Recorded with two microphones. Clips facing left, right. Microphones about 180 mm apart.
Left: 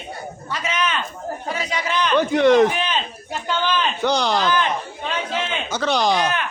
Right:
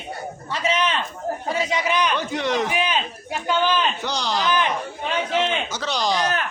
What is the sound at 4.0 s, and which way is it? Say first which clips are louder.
Speech: left 6 dB; 60° left (ahead or behind).